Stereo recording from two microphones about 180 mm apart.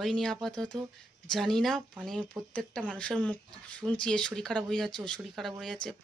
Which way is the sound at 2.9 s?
5° left (ahead or behind).